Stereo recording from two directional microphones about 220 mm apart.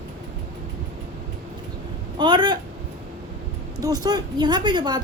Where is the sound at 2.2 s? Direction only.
20° right (ahead or behind).